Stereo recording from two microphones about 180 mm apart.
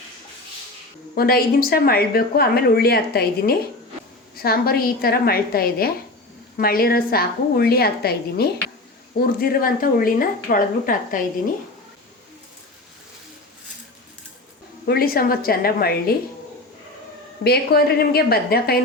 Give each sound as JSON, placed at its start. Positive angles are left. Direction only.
{"t": 1.1, "sound": "speech", "side_deg": 55}
{"t": 14.8, "sound": "speech", "side_deg": 55}
{"t": 17.4, "sound": "speech", "side_deg": 60}